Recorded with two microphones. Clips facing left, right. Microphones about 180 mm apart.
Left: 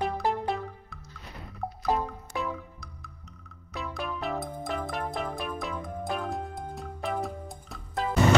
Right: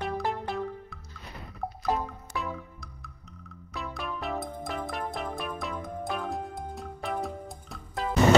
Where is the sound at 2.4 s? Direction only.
Centre (ahead or behind).